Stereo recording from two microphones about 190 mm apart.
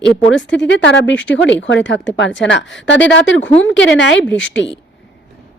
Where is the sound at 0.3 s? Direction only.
70° left (ahead or behind).